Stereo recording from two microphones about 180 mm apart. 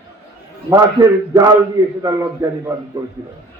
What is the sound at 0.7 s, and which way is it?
A man's voice, 20° right (ahead or behind).